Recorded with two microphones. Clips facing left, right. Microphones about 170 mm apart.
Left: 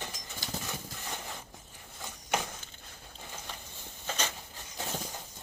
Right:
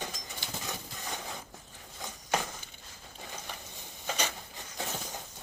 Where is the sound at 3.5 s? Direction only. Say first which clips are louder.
Right 1 dB; 15° right (ahead or behind).